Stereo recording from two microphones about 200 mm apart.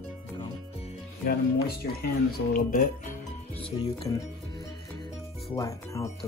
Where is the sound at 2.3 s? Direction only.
45° left (ahead or behind).